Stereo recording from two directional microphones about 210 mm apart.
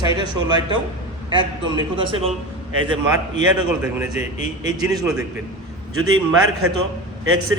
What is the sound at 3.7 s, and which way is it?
Speech, 5° right (ahead or behind).